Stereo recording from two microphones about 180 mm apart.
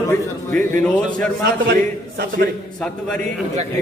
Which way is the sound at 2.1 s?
60° right (ahead or behind).